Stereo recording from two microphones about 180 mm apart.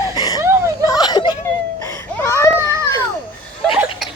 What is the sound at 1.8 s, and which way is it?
Baby cry, 15° left (ahead or behind).